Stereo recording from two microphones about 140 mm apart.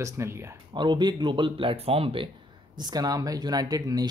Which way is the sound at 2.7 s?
30° right (ahead or behind).